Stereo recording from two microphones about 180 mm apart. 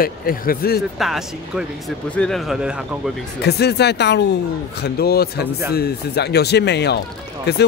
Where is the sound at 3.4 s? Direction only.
65° left (ahead or behind).